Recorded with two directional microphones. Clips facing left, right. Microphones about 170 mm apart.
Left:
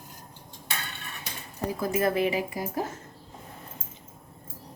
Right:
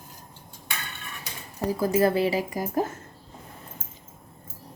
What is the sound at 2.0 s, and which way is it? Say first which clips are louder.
Speech: right 2 dB; 30° right (ahead or behind).